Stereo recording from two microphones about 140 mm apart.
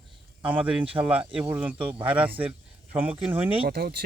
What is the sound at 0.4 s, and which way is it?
Speech, 10° right (ahead or behind).